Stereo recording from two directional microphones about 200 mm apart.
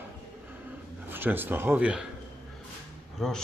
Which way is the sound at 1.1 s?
10° right (ahead or behind).